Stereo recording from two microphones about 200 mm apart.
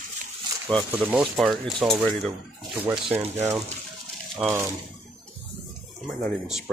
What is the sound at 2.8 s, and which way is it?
Speech, 10° right (ahead or behind).